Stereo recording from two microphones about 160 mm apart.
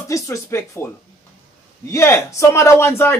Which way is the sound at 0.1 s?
20° left (ahead or behind).